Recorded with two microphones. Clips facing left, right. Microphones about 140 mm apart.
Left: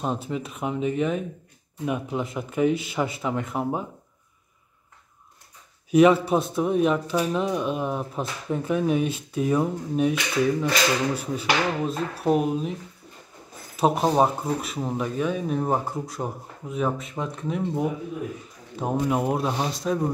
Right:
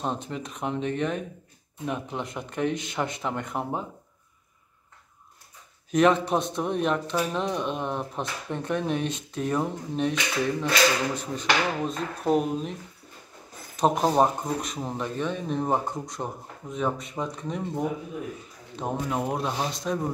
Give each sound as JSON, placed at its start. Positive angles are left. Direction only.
{"t": 0.0, "sound": "speech", "side_deg": 5}
{"t": 5.9, "sound": "speech", "side_deg": 5}
{"t": 13.7, "sound": "speech", "side_deg": 5}